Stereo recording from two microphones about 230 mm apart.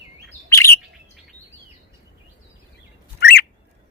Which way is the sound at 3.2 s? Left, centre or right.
Left.